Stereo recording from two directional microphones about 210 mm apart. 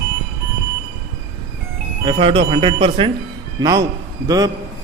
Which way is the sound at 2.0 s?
25° right (ahead or behind).